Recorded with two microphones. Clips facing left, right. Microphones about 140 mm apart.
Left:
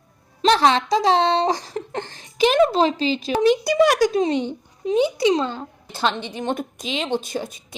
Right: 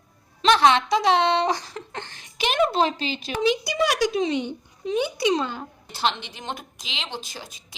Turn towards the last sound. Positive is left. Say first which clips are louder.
# left 11 dB
turn(degrees=55)  # may be behind; listen again after turning